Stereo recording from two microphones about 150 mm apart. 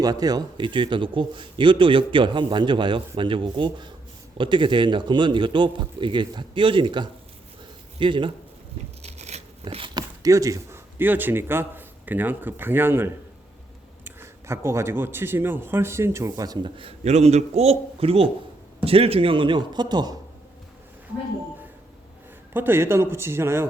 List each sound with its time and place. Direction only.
0.0 s a man's voice: 25° right (ahead or behind)
9.0 s a sound: 45° right (ahead or behind)
9.9 s a man's voice: 25° right (ahead or behind)
22.5 s speech: 15° right (ahead or behind)